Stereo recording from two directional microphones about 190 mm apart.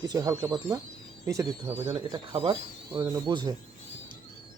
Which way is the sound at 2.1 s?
25° right (ahead or behind).